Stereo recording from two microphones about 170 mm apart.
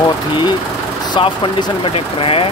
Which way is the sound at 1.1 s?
30° left (ahead or behind).